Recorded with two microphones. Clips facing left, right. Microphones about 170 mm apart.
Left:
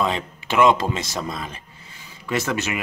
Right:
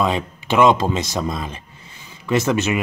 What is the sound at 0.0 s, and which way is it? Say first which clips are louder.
Speech: right 3 dB; 20° right (ahead or behind).